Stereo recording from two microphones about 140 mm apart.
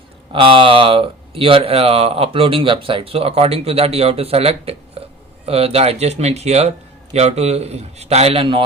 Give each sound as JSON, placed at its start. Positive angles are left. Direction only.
{"t": 0.3, "sound": "speech", "side_deg": -35}